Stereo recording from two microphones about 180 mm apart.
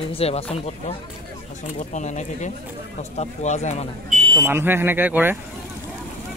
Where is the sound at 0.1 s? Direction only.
35° left (ahead or behind).